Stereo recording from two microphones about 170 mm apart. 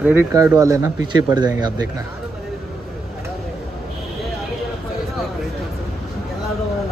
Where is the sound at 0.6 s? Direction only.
20° right (ahead or behind).